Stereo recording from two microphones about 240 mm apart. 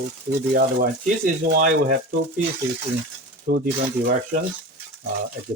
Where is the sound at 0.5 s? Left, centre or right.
Right.